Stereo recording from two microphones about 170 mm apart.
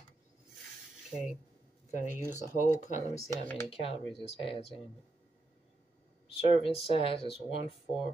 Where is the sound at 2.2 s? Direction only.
15° right (ahead or behind).